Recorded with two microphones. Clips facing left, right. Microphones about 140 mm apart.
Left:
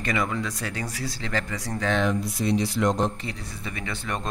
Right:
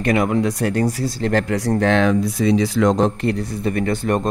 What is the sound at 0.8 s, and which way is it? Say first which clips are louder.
A man's voice: right 12 dB; 45° right (ahead or behind).